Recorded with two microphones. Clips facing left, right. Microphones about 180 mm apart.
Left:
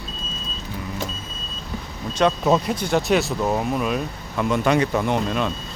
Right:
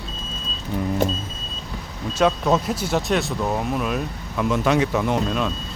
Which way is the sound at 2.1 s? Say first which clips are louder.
Left 1 dB; centre (ahead or behind).